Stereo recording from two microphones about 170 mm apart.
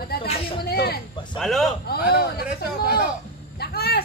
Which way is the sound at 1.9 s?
70° left (ahead or behind).